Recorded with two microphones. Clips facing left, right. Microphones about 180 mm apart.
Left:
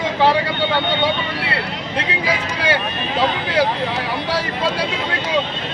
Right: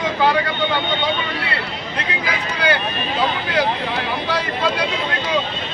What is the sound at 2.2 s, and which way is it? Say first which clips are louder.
Speech: right 1 dB; 30° left (ahead or behind).